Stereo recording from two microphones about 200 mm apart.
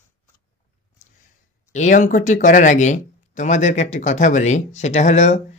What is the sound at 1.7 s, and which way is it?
Speech, 40° left (ahead or behind).